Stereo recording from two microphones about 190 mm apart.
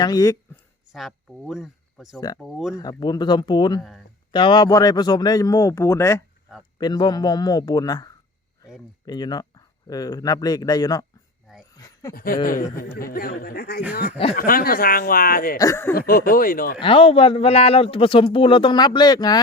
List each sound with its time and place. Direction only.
0.0 s speech: 20° left (ahead or behind)
0.9 s speech: centre (ahead or behind)
2.7 s speech: 20° left (ahead or behind)
3.8 s speech: centre (ahead or behind)
4.3 s speech: 25° left (ahead or behind)
12.1 s speech: 50° left (ahead or behind)
15.5 s speech: 15° left (ahead or behind)
16.0 s speech: 50° left (ahead or behind)
16.8 s speech: 30° left (ahead or behind)